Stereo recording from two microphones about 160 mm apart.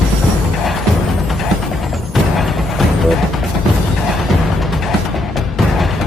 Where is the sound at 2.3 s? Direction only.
Centre (ahead or behind).